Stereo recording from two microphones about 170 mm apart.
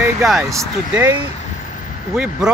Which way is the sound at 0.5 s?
10° right (ahead or behind).